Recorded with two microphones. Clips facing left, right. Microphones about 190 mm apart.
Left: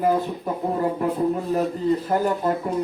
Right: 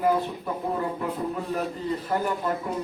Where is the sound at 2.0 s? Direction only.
40° left (ahead or behind).